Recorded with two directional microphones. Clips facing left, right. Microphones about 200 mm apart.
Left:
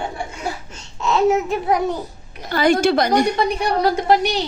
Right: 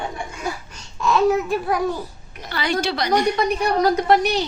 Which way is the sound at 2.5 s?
45° left (ahead or behind).